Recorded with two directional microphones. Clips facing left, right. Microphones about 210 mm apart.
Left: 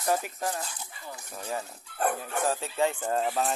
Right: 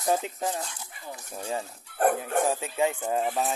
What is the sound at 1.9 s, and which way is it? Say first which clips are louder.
Speech: right 5 dB; 45° right (ahead or behind).